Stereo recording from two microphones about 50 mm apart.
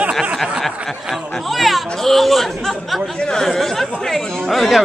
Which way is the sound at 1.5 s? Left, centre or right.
Centre.